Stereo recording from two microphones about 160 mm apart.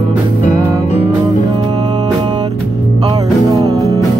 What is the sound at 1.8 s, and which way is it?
Music, 25° right (ahead or behind).